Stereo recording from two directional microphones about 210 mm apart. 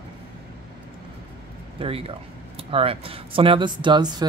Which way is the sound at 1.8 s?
25° right (ahead or behind).